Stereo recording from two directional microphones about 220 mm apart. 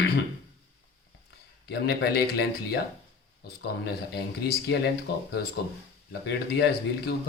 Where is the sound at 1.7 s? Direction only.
50° left (ahead or behind).